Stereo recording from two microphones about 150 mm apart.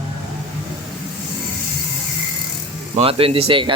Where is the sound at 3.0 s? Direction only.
40° right (ahead or behind).